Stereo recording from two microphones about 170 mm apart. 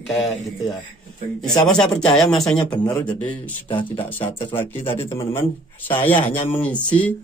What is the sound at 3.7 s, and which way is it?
Speech, 30° left (ahead or behind).